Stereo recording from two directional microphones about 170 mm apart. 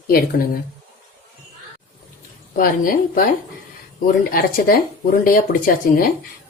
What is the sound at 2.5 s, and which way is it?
Speech, 55° left (ahead or behind).